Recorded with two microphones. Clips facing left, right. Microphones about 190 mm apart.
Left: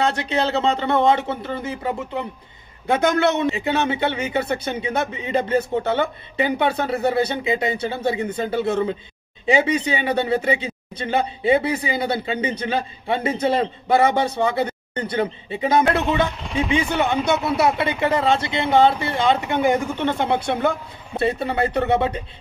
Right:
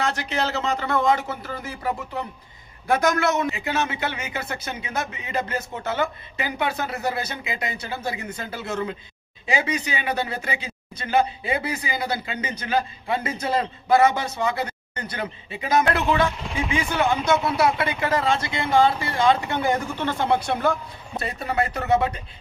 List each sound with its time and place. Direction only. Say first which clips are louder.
0.0 s speech: left 4 dB; 30° left (ahead or behind)